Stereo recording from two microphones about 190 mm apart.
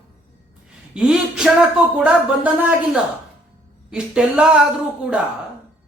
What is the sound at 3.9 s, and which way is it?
Speech, 5° right (ahead or behind).